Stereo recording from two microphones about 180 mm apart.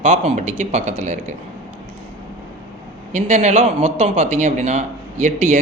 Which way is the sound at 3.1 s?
40° right (ahead or behind).